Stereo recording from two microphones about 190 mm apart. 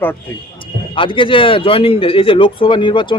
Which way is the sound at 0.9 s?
25° left (ahead or behind).